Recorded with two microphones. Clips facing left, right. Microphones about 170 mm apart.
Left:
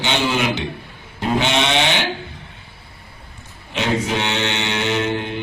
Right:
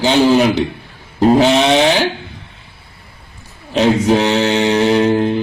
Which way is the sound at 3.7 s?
35° right (ahead or behind).